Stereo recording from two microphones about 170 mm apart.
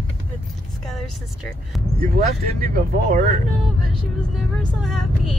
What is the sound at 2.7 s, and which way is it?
Speech, 55° right (ahead or behind).